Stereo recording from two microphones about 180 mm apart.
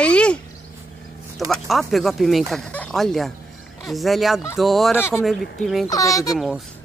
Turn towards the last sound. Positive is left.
turn(degrees=0)  # may be behind; listen again after turning